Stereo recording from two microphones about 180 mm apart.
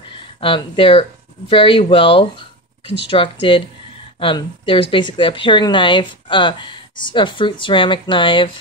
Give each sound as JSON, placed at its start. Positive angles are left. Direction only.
{"t": 0.2, "sound": "speech", "side_deg": 30}